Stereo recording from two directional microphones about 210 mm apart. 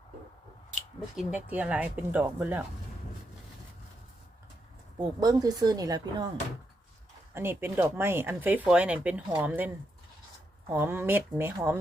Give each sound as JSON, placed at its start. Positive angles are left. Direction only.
{"t": 0.7, "sound": "speech", "side_deg": 0}
{"t": 4.9, "sound": "speech", "side_deg": -20}
{"t": 7.3, "sound": "speech", "side_deg": -10}